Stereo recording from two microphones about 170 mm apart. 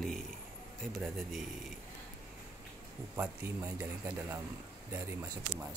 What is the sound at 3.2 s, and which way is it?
Speech, 15° right (ahead or behind).